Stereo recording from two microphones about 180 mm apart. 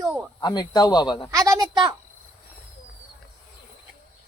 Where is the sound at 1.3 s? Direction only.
20° right (ahead or behind).